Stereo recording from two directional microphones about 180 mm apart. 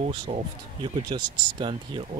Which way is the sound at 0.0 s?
30° right (ahead or behind).